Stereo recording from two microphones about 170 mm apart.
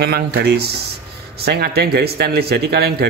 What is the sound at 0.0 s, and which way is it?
Speech, 70° right (ahead or behind).